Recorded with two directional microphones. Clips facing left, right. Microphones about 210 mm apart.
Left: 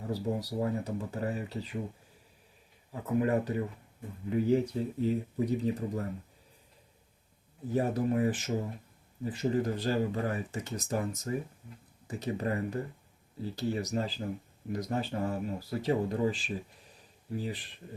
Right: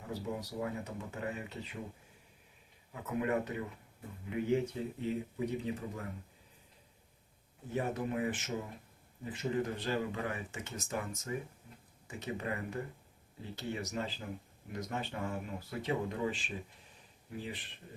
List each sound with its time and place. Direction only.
0.1 s speech: 35° left (ahead or behind)
2.9 s speech: 35° left (ahead or behind)
7.7 s speech: 40° left (ahead or behind)